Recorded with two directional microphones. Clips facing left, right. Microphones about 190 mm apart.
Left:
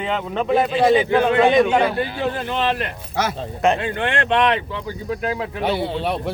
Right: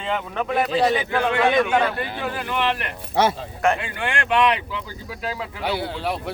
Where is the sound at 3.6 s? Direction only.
20° left (ahead or behind).